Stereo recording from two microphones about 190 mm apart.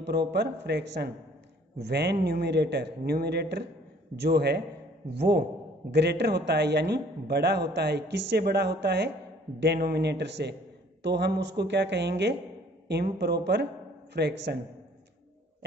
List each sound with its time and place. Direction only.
0.0 s a man's voice: 60° right (ahead or behind)